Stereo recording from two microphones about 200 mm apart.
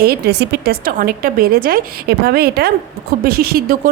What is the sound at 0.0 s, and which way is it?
Speech, 55° right (ahead or behind).